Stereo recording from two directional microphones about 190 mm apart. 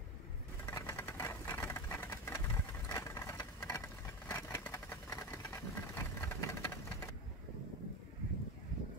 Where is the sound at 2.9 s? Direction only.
15° left (ahead or behind).